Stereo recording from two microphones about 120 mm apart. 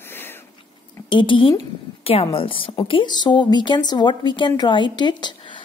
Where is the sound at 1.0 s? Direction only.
45° left (ahead or behind).